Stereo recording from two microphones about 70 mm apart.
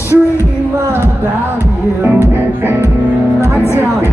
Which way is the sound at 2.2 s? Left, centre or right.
Right.